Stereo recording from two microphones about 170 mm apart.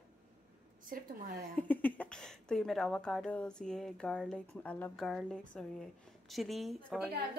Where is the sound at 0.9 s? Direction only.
55° right (ahead or behind).